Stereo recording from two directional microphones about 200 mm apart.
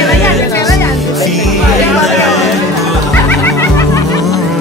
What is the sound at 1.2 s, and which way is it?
Music, centre (ahead or behind).